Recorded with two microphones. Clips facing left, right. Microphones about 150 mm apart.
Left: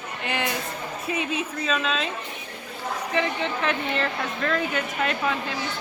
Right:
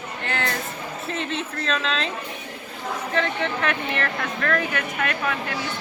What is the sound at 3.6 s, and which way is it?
Speech, 20° left (ahead or behind).